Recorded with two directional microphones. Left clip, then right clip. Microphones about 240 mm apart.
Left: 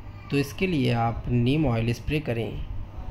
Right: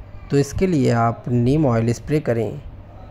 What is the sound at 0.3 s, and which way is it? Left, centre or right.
Speech, centre.